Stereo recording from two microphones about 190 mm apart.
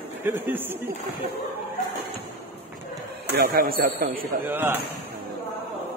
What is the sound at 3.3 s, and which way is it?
Speech, 55° right (ahead or behind).